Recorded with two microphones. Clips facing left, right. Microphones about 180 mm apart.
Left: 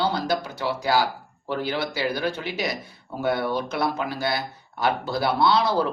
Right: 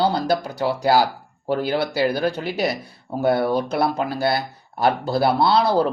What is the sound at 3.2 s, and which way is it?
Speech, 35° right (ahead or behind).